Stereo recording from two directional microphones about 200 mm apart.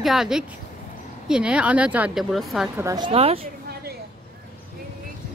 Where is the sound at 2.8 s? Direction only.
15° right (ahead or behind).